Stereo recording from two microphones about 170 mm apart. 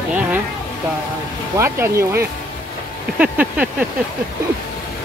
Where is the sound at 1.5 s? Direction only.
15° right (ahead or behind).